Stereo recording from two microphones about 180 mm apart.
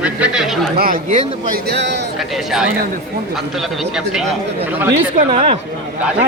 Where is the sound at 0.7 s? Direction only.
55° right (ahead or behind).